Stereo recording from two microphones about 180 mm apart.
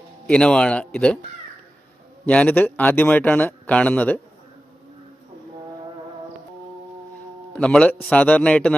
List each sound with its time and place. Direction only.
0.3 s speech: 5° left (ahead or behind)
2.2 s speech: 5° left (ahead or behind)
7.6 s speech: 5° left (ahead or behind)